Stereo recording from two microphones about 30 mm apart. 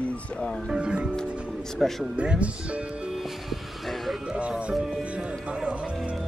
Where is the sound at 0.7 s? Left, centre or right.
Right.